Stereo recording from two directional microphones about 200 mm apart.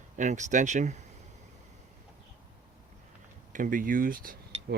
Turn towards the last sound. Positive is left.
turn(degrees=-45)  # may be behind; listen again after turning